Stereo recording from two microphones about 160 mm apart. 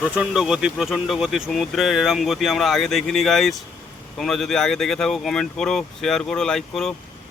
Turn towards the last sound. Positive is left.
turn(degrees=0)  # may be behind; listen again after turning